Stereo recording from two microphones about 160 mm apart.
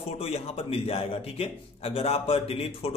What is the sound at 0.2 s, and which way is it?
A man's voice, 40° left (ahead or behind).